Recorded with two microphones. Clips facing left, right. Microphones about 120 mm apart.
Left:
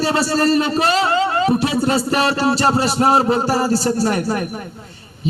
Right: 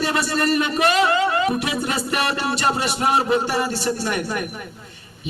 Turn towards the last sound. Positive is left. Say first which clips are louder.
# left 5 dB
turn(degrees=35)  # may be behind; listen again after turning